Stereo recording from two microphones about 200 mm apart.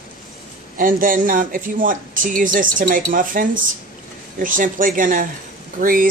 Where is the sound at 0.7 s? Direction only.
45° right (ahead or behind).